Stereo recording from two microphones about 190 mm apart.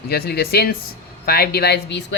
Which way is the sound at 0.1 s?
55° left (ahead or behind).